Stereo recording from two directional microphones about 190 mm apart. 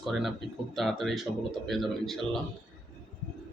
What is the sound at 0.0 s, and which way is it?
Speech, centre (ahead or behind).